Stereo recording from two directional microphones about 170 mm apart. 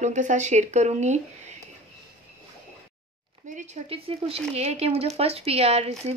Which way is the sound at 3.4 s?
45° right (ahead or behind).